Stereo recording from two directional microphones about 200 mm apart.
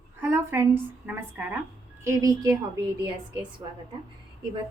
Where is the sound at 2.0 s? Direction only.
15° right (ahead or behind).